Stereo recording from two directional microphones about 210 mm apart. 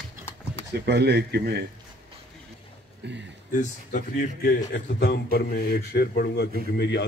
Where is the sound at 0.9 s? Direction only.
55° right (ahead or behind).